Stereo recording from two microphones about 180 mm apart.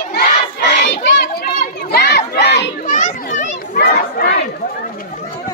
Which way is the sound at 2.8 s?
45° left (ahead or behind).